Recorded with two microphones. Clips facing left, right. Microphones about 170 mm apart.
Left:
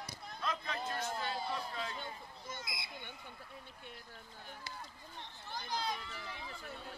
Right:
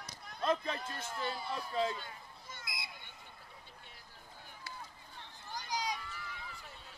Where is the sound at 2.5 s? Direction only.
25° left (ahead or behind).